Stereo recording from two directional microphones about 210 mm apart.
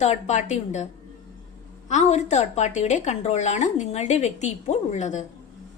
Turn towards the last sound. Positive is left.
turn(degrees=35)  # may be behind; listen again after turning